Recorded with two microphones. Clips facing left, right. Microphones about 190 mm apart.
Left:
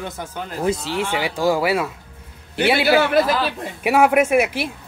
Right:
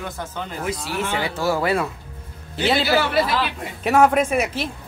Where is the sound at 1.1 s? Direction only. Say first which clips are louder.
Left 3 dB; 15° left (ahead or behind).